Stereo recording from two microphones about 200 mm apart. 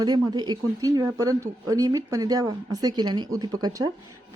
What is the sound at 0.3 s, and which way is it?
A woman's voice, 20° right (ahead or behind).